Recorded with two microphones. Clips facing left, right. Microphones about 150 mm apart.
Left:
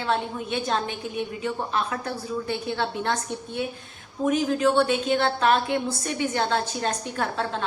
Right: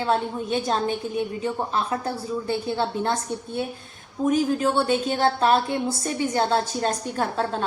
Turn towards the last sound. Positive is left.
turn(degrees=-40)  # may be behind; listen again after turning